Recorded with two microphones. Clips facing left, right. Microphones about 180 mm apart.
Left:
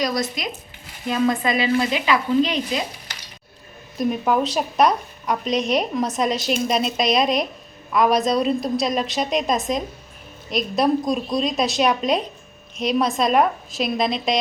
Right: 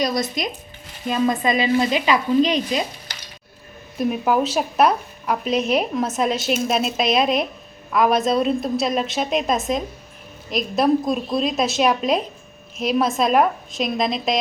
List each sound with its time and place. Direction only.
0.0 s speech: 20° right (ahead or behind)
3.9 s a woman's voice: 5° right (ahead or behind)